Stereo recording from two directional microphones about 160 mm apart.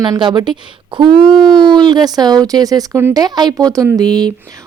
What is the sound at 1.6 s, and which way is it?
Speech, 25° right (ahead or behind).